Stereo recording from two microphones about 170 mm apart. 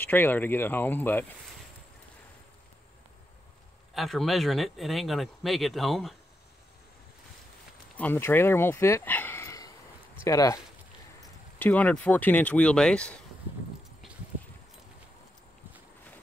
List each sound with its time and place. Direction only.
0.0 s speech: 10° left (ahead or behind)
3.9 s speech: centre (ahead or behind)
8.0 s speech: 10° left (ahead or behind)